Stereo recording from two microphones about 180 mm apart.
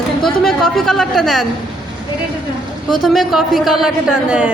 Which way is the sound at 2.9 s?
Centre (ahead or behind).